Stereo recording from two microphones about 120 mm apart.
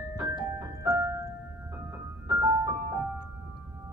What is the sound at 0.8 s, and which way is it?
Music, 25° right (ahead or behind).